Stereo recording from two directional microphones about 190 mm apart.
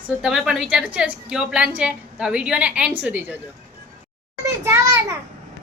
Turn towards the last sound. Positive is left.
turn(degrees=-15)  # may be behind; listen again after turning